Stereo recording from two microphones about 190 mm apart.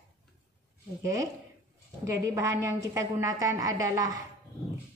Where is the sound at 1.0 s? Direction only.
15° right (ahead or behind).